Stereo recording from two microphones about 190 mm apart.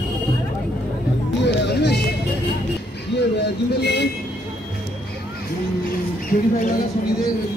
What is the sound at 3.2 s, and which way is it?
Vehicle, 60° left (ahead or behind).